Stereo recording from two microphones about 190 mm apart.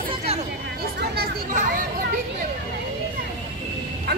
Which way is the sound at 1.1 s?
55° right (ahead or behind).